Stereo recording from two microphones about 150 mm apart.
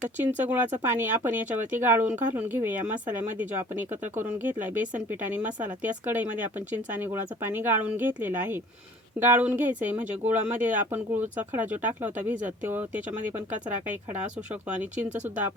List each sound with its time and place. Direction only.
0.2 s speech: 10° right (ahead or behind)